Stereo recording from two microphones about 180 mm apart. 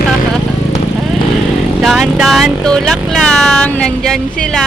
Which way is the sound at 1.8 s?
Centre (ahead or behind).